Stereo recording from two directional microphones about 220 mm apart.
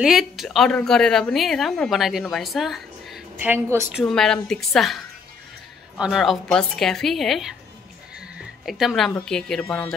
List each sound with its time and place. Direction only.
0.0 s a woman's voice: centre (ahead or behind)
4.0 s a woman's voice: centre (ahead or behind)
8.6 s a woman's voice: centre (ahead or behind)